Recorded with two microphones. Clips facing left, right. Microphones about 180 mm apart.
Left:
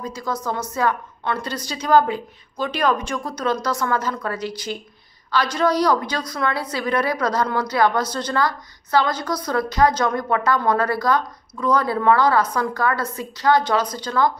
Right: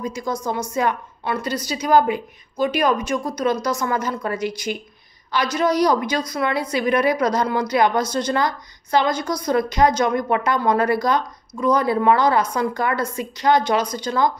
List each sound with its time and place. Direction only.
0.0 s a woman's voice: 15° right (ahead or behind)